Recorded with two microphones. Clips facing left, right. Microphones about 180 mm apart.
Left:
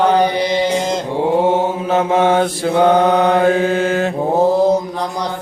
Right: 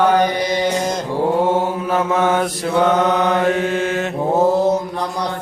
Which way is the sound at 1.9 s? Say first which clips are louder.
Left 3 dB; 25° left (ahead or behind).